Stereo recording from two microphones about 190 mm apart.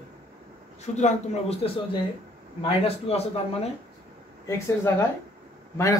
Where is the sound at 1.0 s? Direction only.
35° left (ahead or behind).